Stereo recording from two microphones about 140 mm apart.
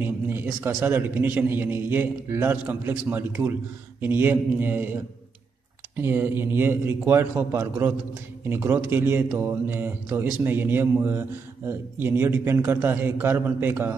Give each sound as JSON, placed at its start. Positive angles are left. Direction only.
{"t": 0.0, "sound": "a man's voice", "side_deg": -15}